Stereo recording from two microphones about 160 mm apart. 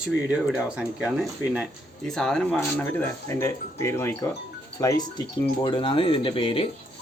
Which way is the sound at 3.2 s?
20° left (ahead or behind).